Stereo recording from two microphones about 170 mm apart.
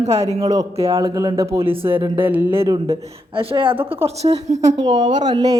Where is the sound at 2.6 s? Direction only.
35° right (ahead or behind).